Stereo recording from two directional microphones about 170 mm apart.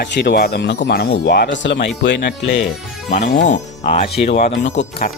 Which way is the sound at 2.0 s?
90° left.